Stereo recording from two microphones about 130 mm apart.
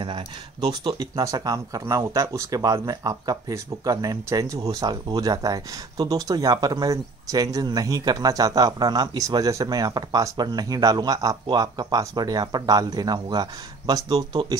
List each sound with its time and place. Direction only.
0.0 s speech: 35° right (ahead or behind)